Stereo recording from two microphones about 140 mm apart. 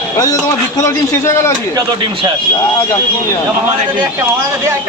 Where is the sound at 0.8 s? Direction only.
20° left (ahead or behind).